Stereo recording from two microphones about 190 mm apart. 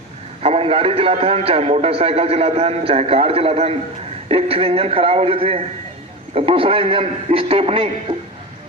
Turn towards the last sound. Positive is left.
turn(degrees=-30)  # may be behind; listen again after turning